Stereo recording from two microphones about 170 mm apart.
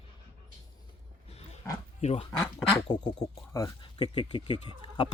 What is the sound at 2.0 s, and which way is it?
Speech, 35° left (ahead or behind).